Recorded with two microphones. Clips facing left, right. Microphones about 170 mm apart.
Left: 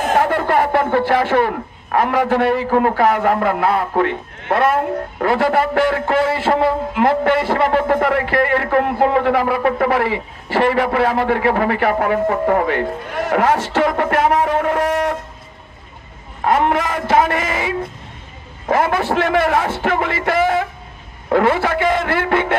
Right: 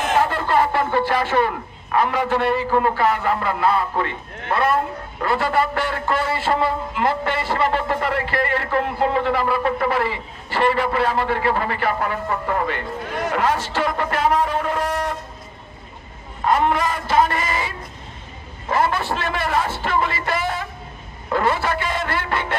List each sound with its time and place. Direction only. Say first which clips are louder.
0.1 s speech: left 3 dB; 55° left (ahead or behind)
16.3 s speech: left 3 dB; 60° left (ahead or behind)